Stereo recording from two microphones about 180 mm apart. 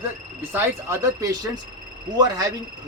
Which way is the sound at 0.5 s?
10° right (ahead or behind).